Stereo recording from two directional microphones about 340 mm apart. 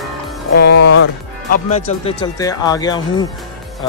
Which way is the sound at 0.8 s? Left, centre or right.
Left.